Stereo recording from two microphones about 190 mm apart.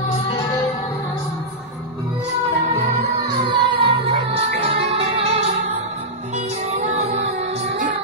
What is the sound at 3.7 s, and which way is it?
Music, 30° right (ahead or behind).